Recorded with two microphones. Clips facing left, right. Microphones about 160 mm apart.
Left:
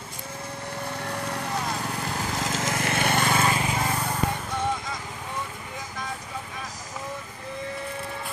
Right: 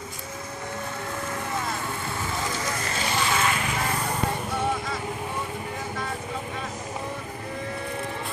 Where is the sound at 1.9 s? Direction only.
85° left; by 3.3 s 55° left (ahead or behind).